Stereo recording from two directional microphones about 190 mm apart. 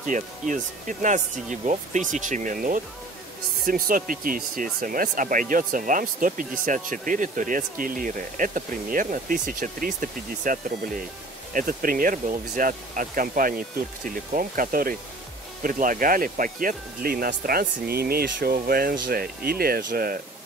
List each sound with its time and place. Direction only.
0.1 s speech: 40° right (ahead or behind)